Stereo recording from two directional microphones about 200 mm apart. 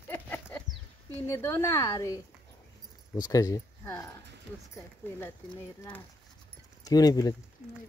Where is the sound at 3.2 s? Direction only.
15° left (ahead or behind).